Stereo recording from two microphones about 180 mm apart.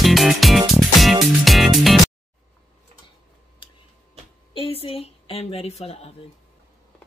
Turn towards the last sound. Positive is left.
turn(degrees=35)  # may be behind; listen again after turning